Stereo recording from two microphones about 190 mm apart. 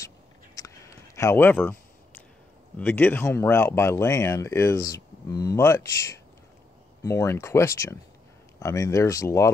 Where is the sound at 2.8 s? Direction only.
10° left (ahead or behind).